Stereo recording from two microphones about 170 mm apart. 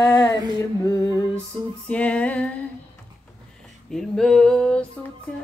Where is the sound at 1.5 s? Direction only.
10° left (ahead or behind).